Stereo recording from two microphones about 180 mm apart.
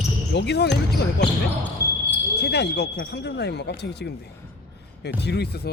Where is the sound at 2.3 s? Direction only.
65° left (ahead or behind).